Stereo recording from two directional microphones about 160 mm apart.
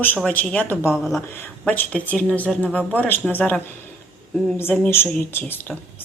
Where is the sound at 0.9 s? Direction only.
Centre (ahead or behind).